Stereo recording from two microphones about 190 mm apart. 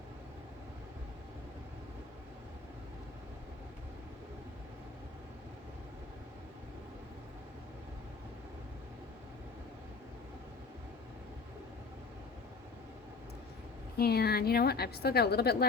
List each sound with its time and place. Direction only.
14.0 s a woman's voice: 55° left (ahead or behind)